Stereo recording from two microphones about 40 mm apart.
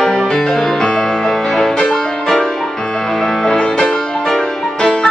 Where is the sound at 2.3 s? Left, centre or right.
Centre.